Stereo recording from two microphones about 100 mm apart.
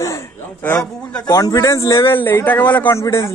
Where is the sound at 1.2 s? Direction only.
35° left (ahead or behind).